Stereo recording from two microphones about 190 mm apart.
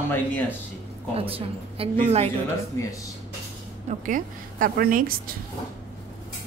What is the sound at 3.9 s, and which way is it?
A woman's voice, 45° right (ahead or behind).